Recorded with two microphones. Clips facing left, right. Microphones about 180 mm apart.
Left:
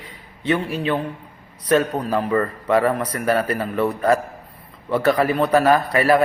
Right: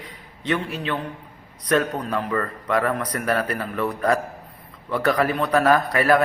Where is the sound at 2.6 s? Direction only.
30° left (ahead or behind).